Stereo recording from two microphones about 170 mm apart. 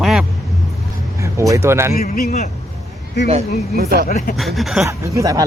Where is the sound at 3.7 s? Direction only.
65° right (ahead or behind).